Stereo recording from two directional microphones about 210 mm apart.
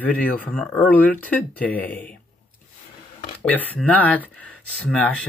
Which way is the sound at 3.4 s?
5° left (ahead or behind).